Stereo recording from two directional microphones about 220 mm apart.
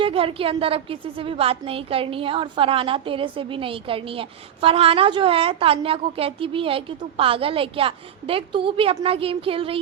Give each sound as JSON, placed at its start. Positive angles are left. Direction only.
{"t": 0.0, "sound": "a woman's voice", "side_deg": -25}